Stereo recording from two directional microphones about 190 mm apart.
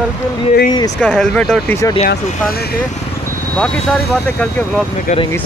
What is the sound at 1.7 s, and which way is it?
Speech, 20° left (ahead or behind).